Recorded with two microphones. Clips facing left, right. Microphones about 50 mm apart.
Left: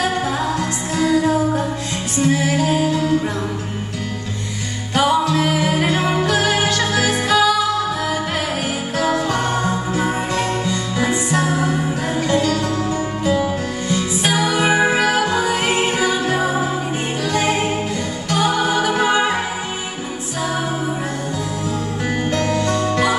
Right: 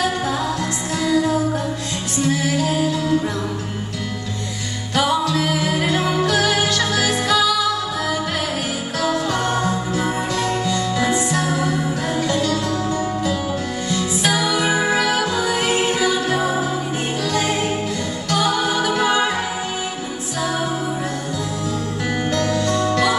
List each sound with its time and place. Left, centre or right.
0.0 s music: centre
4.9 s music: centre
22.3 s music: centre